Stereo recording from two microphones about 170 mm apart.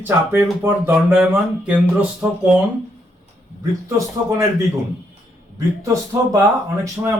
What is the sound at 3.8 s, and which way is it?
Speech, 20° right (ahead or behind).